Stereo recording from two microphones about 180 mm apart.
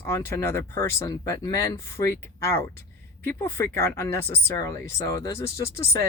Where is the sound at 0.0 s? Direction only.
15° left (ahead or behind).